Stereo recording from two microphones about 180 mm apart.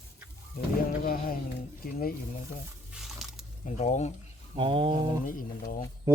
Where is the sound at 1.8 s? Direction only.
55° left (ahead or behind).